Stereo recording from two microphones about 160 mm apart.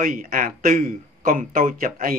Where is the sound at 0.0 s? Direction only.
60° right (ahead or behind).